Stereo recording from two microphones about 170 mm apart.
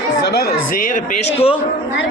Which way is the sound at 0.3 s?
70° left (ahead or behind).